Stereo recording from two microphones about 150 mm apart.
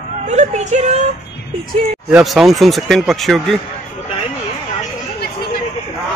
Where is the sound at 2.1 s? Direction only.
Centre (ahead or behind).